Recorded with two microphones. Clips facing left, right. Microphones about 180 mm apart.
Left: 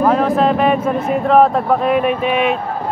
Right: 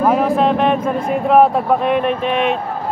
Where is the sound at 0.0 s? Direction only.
5° right (ahead or behind).